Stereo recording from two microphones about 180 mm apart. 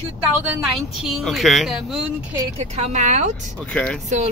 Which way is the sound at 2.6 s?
40° right (ahead or behind).